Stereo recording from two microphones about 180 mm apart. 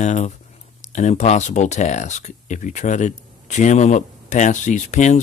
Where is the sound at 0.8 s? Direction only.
40° left (ahead or behind).